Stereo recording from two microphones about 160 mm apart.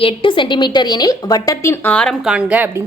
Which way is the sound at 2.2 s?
5° right (ahead or behind).